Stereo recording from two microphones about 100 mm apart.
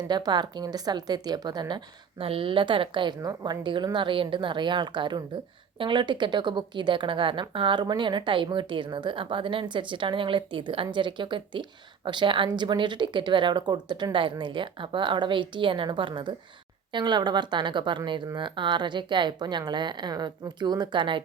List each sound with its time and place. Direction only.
0.1 s speech: 45° right (ahead or behind)
2.1 s a woman's voice: 70° right (ahead or behind)
3.2 s a woman's voice: 40° right (ahead or behind)